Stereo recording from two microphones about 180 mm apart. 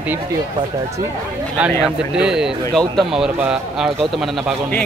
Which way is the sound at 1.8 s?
5° right (ahead or behind).